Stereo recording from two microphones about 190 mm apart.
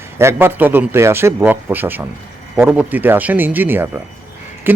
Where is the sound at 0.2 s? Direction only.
15° right (ahead or behind).